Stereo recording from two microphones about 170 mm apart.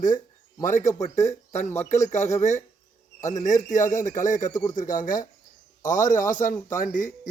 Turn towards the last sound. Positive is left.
turn(degrees=50)  # may be behind; listen again after turning